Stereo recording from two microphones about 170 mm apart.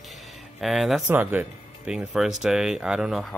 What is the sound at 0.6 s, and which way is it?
Speech, centre (ahead or behind).